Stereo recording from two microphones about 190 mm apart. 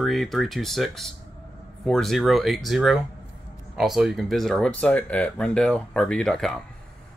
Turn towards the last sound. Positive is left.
turn(degrees=5)  # may be behind; listen again after turning